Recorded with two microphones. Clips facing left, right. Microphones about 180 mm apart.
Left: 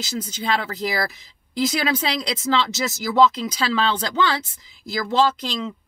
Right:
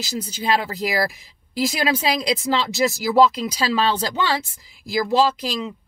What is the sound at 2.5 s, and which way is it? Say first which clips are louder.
Speech: left 2 dB; 20° right (ahead or behind).